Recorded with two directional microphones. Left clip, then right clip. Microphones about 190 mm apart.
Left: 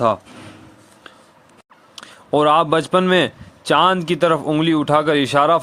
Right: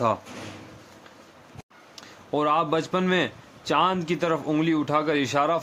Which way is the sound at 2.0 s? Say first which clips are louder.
Left 9 dB; 35° left (ahead or behind).